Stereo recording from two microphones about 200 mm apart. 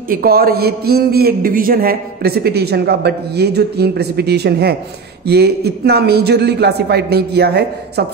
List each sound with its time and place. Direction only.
0.1 s a man's voice: 50° right (ahead or behind)